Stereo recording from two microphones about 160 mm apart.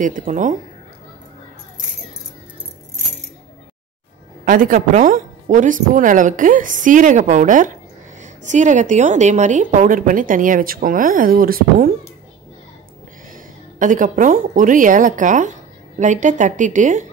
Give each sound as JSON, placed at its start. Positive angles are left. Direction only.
{"t": 0.0, "sound": "a woman's voice", "side_deg": -55}
{"t": 4.5, "sound": "a woman's voice", "side_deg": -60}
{"t": 13.3, "sound": "a woman's voice", "side_deg": -55}